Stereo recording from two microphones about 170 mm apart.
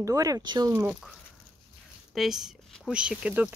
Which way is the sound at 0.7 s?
10° right (ahead or behind).